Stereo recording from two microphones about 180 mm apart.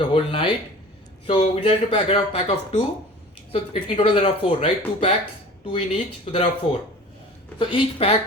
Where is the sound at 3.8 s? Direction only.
30° left (ahead or behind).